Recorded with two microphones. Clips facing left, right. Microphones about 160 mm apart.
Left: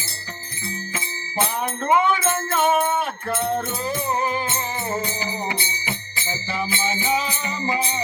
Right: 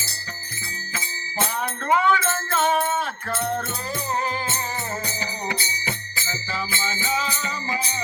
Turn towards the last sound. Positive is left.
turn(degrees=20)  # may be behind; listen again after turning